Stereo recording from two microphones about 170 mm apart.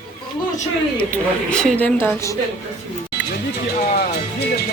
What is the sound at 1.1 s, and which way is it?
Speech, 5° left (ahead or behind).